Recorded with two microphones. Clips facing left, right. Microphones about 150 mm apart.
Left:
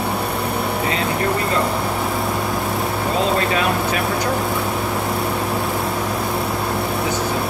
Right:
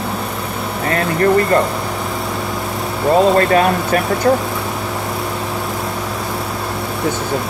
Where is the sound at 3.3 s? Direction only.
50° right (ahead or behind).